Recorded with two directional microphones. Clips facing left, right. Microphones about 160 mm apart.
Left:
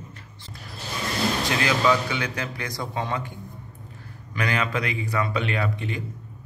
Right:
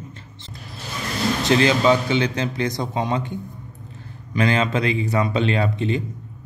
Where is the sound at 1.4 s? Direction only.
25° right (ahead or behind).